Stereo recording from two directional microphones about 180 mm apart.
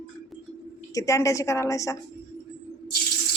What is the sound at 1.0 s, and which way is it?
A woman's voice, 15° left (ahead or behind).